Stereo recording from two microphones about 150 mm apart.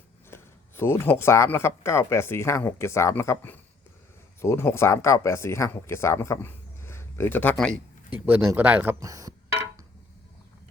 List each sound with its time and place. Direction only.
0.3 s speech: 15° left (ahead or behind)
8.1 s speech: 10° right (ahead or behind)
9.0 s a sound: 25° right (ahead or behind)